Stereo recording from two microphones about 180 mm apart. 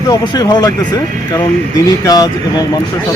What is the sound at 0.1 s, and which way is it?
Speech, 20° left (ahead or behind).